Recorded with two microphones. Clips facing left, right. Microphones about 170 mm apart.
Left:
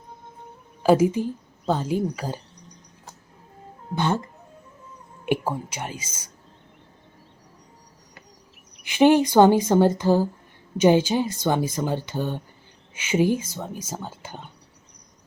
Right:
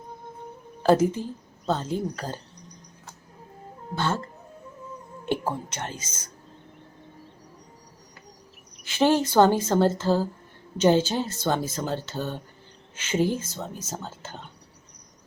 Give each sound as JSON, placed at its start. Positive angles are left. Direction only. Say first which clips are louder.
{"t": 0.8, "sound": "speech", "louder": "left 2 dB", "side_deg": 10}
{"t": 3.9, "sound": "speech", "louder": "left 3 dB", "side_deg": 15}
{"t": 8.8, "sound": "speech", "louder": "left 5 dB", "side_deg": 15}